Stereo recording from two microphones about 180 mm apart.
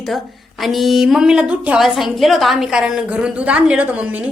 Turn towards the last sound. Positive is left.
turn(degrees=-10)  # may be behind; listen again after turning